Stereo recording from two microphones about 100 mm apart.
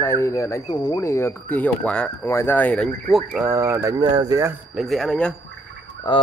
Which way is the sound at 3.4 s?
25° right (ahead or behind).